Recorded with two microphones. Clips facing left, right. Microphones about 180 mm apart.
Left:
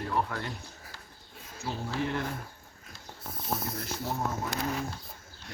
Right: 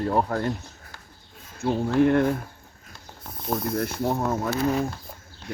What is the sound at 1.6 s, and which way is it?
Speech, 60° right (ahead or behind).